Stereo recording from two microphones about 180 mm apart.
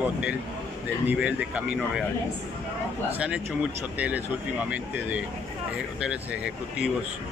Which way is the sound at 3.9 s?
10° right (ahead or behind).